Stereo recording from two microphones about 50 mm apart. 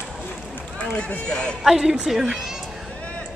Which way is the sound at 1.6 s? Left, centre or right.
Centre.